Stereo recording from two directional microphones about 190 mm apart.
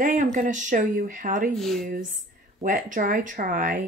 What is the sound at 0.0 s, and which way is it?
Speech, 45° right (ahead or behind).